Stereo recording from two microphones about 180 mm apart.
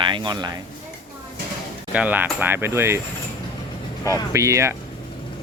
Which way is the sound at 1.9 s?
10° right (ahead or behind).